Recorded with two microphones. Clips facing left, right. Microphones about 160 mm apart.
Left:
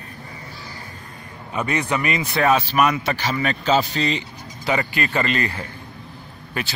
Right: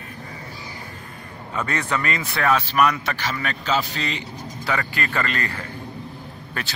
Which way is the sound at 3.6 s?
30° left (ahead or behind).